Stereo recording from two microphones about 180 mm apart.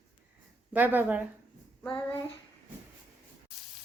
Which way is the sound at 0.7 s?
10° right (ahead or behind).